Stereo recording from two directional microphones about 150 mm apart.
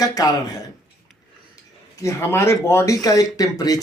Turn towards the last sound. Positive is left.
turn(degrees=25)  # may be behind; listen again after turning